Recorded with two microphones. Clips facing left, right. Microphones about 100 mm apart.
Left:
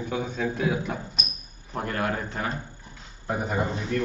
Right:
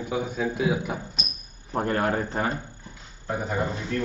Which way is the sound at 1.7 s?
30° right (ahead or behind).